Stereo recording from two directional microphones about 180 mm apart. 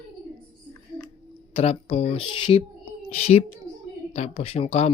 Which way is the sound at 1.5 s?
35° left (ahead or behind).